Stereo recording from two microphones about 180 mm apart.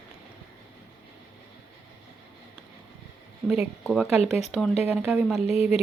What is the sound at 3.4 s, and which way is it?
Speech, 5° right (ahead or behind).